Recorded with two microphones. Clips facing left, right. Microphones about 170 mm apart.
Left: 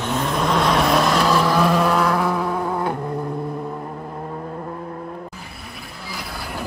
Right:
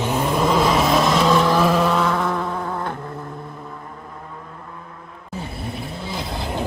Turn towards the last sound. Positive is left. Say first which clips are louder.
# right 4 dB
turn(degrees=-25)  # may be behind; listen again after turning